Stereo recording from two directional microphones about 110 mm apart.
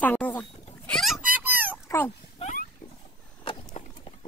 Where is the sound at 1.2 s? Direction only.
15° right (ahead or behind).